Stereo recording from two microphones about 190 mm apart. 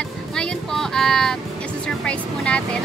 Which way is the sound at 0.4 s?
Centre (ahead or behind).